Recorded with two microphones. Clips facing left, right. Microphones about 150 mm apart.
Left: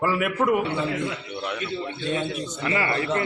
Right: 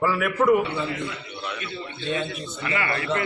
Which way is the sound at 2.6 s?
30° left (ahead or behind).